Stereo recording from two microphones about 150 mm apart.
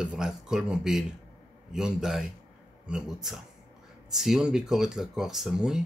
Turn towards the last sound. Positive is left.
turn(degrees=-5)  # may be behind; listen again after turning